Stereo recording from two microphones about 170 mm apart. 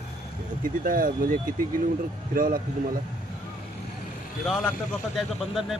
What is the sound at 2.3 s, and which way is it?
Speech, 60° right (ahead or behind).